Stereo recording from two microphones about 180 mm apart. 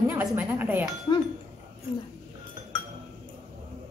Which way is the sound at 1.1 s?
25° left (ahead or behind).